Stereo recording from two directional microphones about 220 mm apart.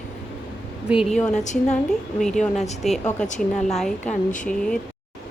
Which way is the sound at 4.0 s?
35° left (ahead or behind).